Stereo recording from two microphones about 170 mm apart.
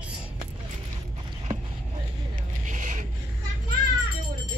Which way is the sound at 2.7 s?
45° right (ahead or behind).